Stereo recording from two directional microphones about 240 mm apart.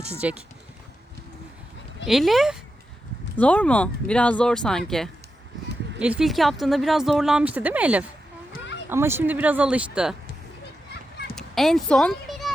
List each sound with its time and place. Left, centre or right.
0.2 s speech: centre
2.0 s speech: centre
11.3 s a sound: centre